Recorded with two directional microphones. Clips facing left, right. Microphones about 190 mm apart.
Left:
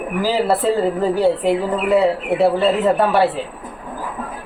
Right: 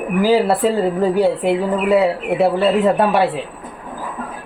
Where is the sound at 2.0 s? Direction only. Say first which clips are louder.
Even; centre (ahead or behind).